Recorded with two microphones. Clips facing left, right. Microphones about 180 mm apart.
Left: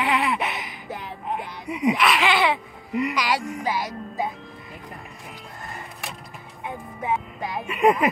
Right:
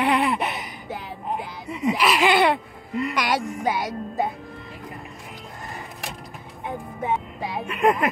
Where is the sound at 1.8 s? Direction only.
Centre (ahead or behind).